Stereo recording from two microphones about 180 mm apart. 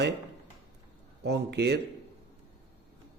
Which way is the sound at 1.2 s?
70° right (ahead or behind).